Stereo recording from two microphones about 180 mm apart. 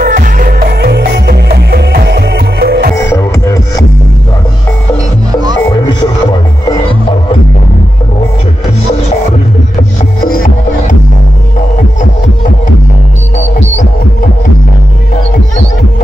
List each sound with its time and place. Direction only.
0.0 s music: 50° right (ahead or behind)
3.1 s music: 15° left (ahead or behind)
5.7 s music: 25° left (ahead or behind)
12.0 s music: 45° left (ahead or behind)